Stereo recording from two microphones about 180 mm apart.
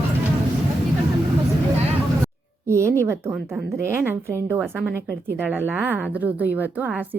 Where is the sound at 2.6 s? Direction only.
15° right (ahead or behind).